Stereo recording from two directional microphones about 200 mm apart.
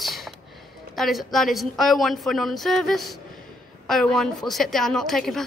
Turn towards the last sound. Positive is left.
turn(degrees=0)  # may be behind; listen again after turning